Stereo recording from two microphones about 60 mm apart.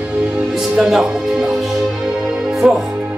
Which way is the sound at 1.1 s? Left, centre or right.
Centre.